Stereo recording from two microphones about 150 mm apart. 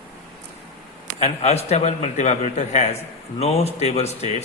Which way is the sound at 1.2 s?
45° left (ahead or behind).